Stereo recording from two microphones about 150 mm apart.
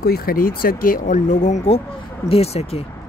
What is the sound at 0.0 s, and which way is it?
Speech, 85° left.